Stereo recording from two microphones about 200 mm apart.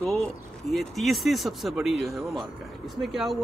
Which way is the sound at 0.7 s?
Centre (ahead or behind).